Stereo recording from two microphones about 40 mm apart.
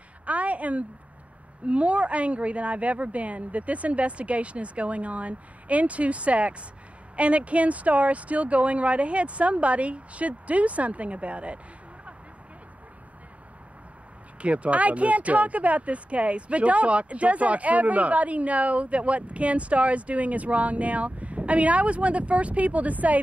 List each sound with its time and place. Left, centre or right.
0.2 s a sound: right
1.7 s speech: right
14.4 s speech: right